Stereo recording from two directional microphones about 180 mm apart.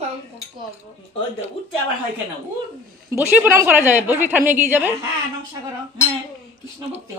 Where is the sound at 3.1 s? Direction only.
10° right (ahead or behind).